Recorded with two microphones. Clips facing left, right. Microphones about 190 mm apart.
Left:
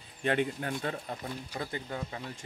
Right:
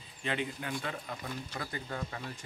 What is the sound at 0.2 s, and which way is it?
Speech, 50° left (ahead or behind).